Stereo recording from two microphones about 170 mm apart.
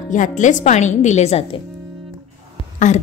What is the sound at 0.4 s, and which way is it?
Speech, 45° left (ahead or behind).